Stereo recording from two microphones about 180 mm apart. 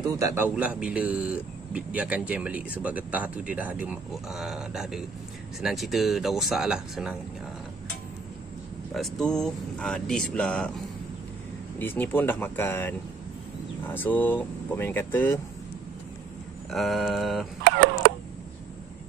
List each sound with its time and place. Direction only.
0.2 s speech: 10° right (ahead or behind)
8.9 s speech: centre (ahead or behind)
11.8 s speech: 10° left (ahead or behind)
16.7 s speech: centre (ahead or behind)
17.6 s a sound: 85° right